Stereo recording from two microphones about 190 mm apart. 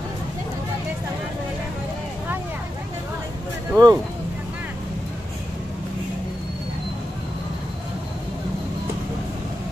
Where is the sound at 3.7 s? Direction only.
15° right (ahead or behind).